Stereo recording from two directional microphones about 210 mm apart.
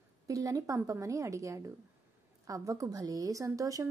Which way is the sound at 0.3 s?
15° right (ahead or behind).